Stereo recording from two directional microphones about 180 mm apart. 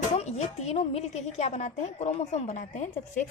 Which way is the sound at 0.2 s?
35° left (ahead or behind).